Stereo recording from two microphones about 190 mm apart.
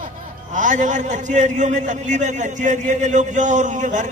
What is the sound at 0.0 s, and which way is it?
A man's voice, 40° right (ahead or behind).